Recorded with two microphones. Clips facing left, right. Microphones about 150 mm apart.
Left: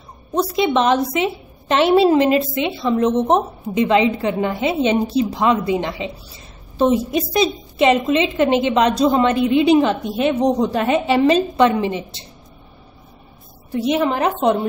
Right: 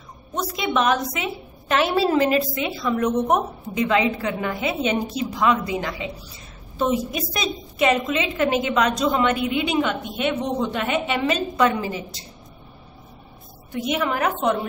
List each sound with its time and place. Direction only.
0.3 s a woman's voice: 30° left (ahead or behind)
13.7 s a woman's voice: 35° left (ahead or behind)